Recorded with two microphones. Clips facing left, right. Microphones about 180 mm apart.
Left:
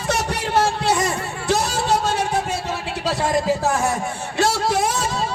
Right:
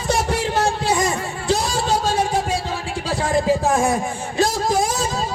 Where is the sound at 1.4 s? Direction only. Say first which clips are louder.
Even; 65° left (ahead or behind).